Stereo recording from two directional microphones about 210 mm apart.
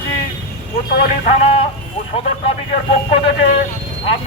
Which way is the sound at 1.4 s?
30° left (ahead or behind).